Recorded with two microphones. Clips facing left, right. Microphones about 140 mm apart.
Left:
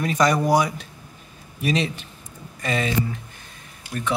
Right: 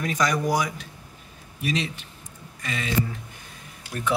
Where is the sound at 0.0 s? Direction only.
30° left (ahead or behind).